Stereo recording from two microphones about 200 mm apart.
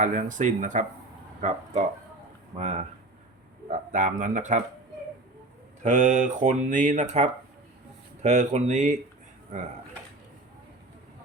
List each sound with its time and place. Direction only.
0.0 s speech: 40° right (ahead or behind)
5.8 s speech: 40° right (ahead or behind)